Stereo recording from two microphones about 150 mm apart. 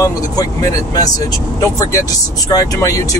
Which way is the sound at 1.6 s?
20° left (ahead or behind).